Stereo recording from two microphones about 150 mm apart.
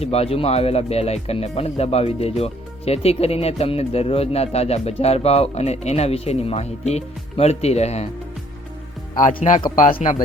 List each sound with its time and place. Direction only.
0.0 s speech: 45° left (ahead or behind)
9.2 s a man's voice: 55° left (ahead or behind)